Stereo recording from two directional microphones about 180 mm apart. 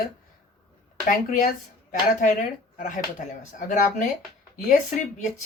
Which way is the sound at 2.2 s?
45° left (ahead or behind).